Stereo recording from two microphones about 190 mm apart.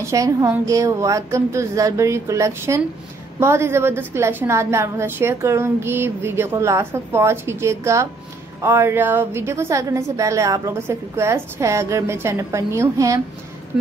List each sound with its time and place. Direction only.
0.0 s a woman's voice: 15° right (ahead or behind)